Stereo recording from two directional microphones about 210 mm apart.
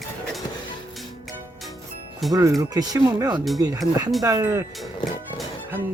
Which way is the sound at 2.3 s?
15° right (ahead or behind).